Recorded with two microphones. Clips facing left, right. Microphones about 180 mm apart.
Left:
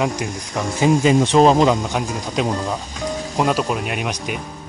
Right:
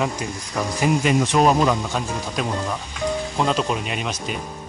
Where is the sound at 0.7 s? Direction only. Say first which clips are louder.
Left 5 dB; 25° left (ahead or behind).